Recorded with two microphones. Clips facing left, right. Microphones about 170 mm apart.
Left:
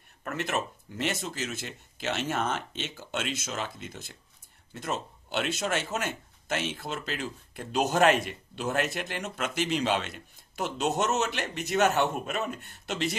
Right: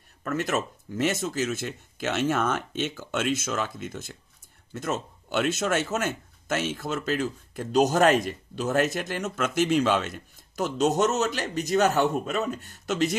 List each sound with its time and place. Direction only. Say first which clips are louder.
0.2 s a man's voice: right 4 dB; 40° right (ahead or behind)